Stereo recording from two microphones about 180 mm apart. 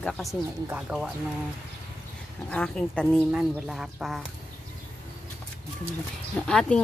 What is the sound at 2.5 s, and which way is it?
Speech, 5° left (ahead or behind).